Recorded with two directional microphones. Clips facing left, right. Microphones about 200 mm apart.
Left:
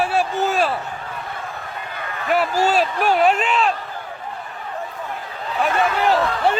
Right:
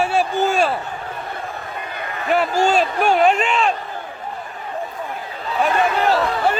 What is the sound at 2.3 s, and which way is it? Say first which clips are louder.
Speech: right 1 dB; 5° left (ahead or behind).